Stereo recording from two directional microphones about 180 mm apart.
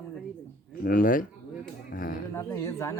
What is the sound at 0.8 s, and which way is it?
Speech, 50° left (ahead or behind).